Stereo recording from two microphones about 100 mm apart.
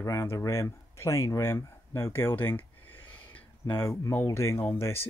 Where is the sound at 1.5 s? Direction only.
25° left (ahead or behind).